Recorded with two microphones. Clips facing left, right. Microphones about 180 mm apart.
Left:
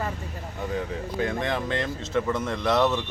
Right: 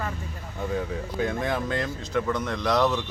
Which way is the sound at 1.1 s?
5° right (ahead or behind).